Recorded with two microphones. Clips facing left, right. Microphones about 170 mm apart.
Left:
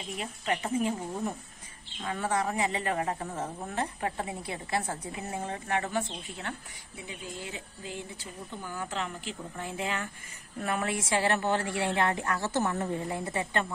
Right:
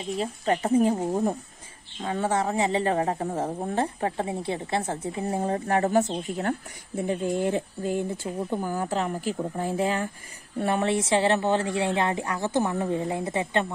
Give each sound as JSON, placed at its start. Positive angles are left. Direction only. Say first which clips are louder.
{"t": 0.2, "sound": "a woman's voice", "louder": "right 6 dB", "side_deg": -35}
{"t": 2.0, "sound": "a woman's voice", "louder": "right 5 dB", "side_deg": -25}